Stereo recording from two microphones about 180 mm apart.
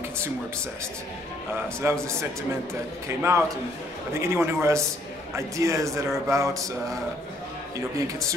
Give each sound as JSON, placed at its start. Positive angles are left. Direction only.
{"t": 1.8, "sound": "a man's voice", "side_deg": -15}
{"t": 3.2, "sound": "a man's voice", "side_deg": -15}